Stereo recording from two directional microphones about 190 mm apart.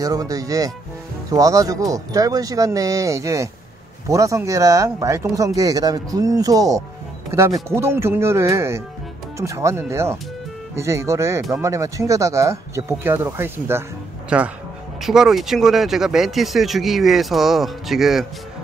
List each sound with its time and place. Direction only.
0.0 s speech: 20° right (ahead or behind); by 18.2 s centre (ahead or behind)